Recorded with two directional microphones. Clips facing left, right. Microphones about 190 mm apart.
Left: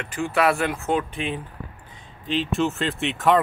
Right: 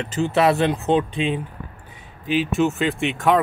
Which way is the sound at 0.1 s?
25° right (ahead or behind).